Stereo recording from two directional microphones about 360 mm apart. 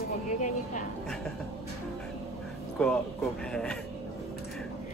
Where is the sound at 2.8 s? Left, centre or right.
Centre.